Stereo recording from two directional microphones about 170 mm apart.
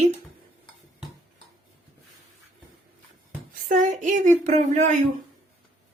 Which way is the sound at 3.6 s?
50° right (ahead or behind).